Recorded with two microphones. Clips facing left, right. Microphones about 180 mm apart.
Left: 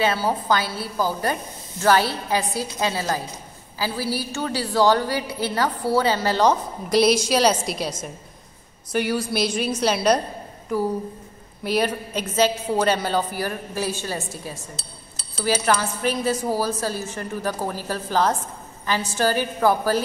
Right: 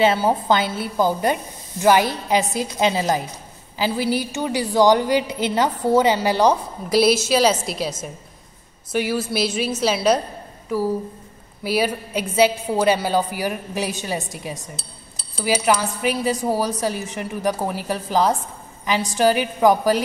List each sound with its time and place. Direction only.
0.0 s a woman's voice: 25° right (ahead or behind); by 10.2 s 5° right (ahead or behind)
11.6 s a woman's voice: 5° right (ahead or behind)